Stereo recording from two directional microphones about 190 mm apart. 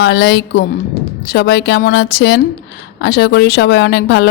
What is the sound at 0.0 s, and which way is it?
Speech, 60° left (ahead or behind).